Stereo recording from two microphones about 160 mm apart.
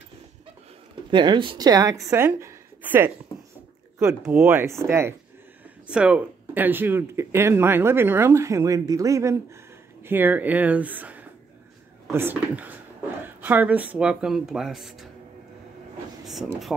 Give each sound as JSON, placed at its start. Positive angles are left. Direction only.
{"t": 1.1, "sound": "a woman's voice", "side_deg": -30}
{"t": 4.2, "sound": "speech", "side_deg": -10}